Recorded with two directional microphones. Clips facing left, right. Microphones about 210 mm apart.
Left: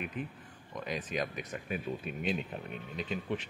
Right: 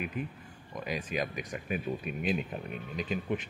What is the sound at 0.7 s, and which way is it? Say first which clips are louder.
Speech: right 2 dB; 10° right (ahead or behind).